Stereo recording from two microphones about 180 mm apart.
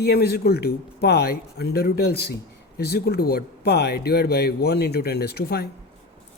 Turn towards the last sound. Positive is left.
turn(degrees=65)  # may be behind; listen again after turning